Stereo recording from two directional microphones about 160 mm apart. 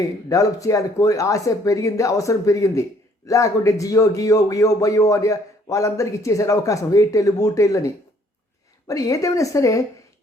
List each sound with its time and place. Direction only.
0.0 s a man's voice: 20° left (ahead or behind)